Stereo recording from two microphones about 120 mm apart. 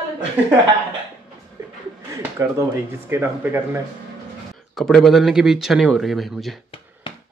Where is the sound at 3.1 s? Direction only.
20° right (ahead or behind).